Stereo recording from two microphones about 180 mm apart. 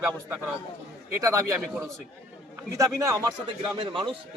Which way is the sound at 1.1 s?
15° right (ahead or behind).